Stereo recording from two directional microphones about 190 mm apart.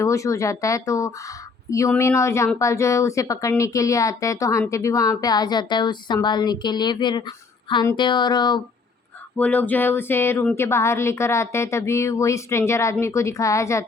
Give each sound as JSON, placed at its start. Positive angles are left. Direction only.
{"t": 0.0, "sound": "a woman's voice", "side_deg": 15}
{"t": 9.4, "sound": "speech", "side_deg": 10}